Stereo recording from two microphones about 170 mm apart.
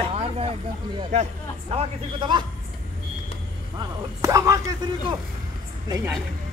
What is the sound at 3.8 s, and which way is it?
Speech, 20° right (ahead or behind).